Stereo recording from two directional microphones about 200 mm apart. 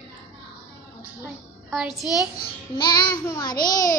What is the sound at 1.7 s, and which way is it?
Speech, centre (ahead or behind).